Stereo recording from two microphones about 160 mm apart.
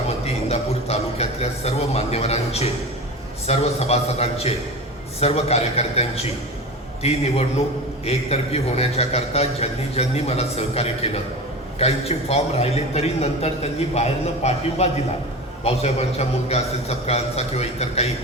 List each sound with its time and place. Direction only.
0.4 s a man's voice: 40° left (ahead or behind)